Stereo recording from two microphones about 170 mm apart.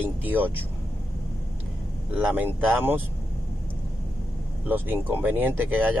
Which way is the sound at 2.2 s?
10° right (ahead or behind).